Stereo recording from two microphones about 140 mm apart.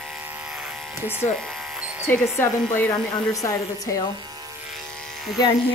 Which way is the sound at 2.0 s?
20° left (ahead or behind).